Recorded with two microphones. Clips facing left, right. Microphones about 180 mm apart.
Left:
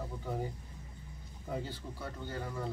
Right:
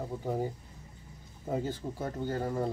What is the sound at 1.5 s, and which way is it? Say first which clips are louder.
Speech: right 7 dB; 45° right (ahead or behind).